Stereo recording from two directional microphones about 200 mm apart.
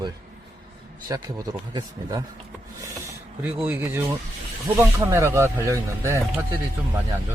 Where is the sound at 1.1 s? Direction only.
15° right (ahead or behind).